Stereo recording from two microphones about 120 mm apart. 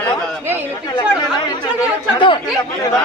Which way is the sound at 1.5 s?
40° left (ahead or behind).